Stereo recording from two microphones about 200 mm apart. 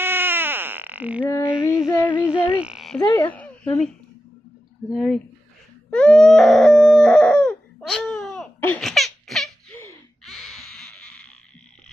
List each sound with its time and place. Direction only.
0.0 s a sound: 10° right (ahead or behind)
1.2 s female singing: 10° left (ahead or behind)
1.5 s female singing: 5° right (ahead or behind)
1.9 s female singing: 10° left (ahead or behind)
2.6 s frog: centre (ahead or behind)
3.0 s frog: 20° left (ahead or behind)
3.3 s a sound: 5° left (ahead or behind)
4.9 s speech: centre (ahead or behind)
5.9 s baby cry: 5° left (ahead or behind)
10.2 s a sound: centre (ahead or behind)